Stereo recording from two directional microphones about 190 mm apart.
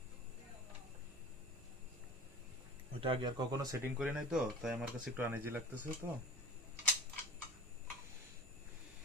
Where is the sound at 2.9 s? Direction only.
30° right (ahead or behind).